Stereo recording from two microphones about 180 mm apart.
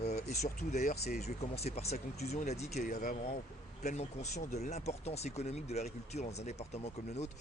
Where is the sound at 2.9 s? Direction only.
50° left (ahead or behind).